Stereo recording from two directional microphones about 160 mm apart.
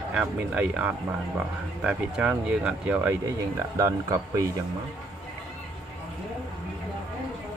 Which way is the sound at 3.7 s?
20° right (ahead or behind).